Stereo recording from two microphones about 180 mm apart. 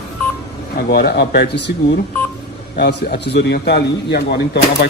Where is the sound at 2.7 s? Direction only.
65° left (ahead or behind).